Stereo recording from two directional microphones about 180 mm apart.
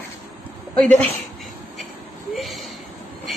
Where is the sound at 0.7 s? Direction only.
5° left (ahead or behind).